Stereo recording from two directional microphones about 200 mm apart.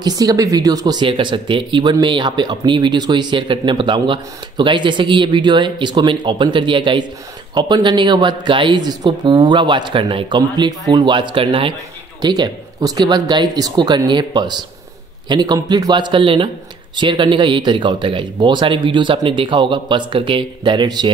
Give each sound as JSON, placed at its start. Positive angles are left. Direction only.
{"t": 0.0, "sound": "speech", "side_deg": -20}